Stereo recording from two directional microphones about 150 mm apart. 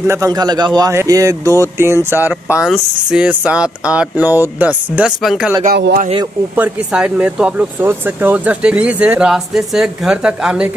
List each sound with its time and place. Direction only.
0.0 s a man's voice: 20° right (ahead or behind); by 5.5 s centre (ahead or behind)
5.7 s speech: 90° right
6.5 s speech: 10° right (ahead or behind)